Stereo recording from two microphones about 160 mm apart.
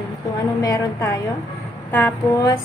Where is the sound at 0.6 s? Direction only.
20° left (ahead or behind).